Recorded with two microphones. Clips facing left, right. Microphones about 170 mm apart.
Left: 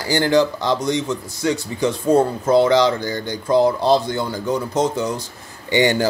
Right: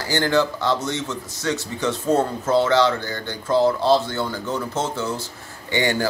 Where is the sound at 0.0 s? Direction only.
15° left (ahead or behind).